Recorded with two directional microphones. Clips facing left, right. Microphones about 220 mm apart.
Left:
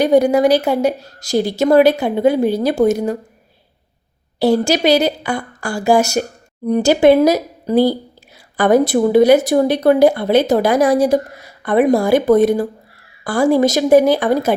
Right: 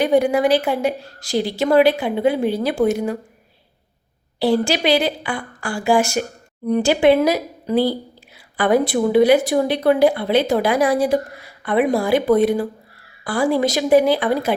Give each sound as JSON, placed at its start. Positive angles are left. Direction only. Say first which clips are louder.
{"t": 0.0, "sound": "a woman's voice", "louder": "left 4 dB", "side_deg": 40}
{"t": 4.4, "sound": "a woman's voice", "louder": "left 4 dB", "side_deg": 40}